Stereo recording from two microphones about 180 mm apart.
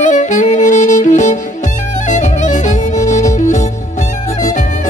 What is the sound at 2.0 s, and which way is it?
Music, 45° left (ahead or behind).